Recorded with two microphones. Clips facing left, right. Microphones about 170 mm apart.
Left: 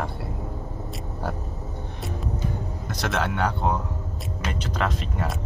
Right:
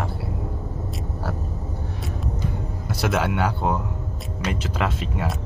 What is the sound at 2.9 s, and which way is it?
A man's voice, 5° right (ahead or behind).